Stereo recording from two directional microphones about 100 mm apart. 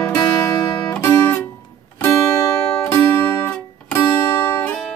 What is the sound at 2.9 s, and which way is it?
Music, 25° left (ahead or behind).